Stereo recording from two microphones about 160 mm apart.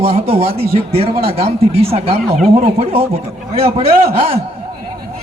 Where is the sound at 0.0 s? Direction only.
40° right (ahead or behind).